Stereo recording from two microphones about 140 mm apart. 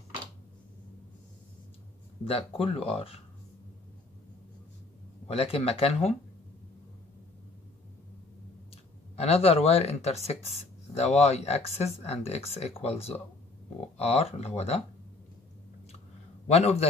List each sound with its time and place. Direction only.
2.2 s speech: 40° left (ahead or behind)
5.3 s speech: 45° left (ahead or behind)
9.1 s speech: 45° left (ahead or behind)
16.4 s speech: 50° left (ahead or behind)